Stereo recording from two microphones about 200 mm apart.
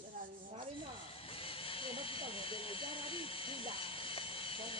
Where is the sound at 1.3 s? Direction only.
25° left (ahead or behind).